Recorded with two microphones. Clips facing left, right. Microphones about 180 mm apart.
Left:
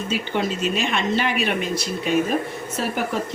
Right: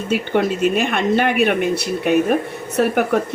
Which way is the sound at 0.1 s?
55° right (ahead or behind).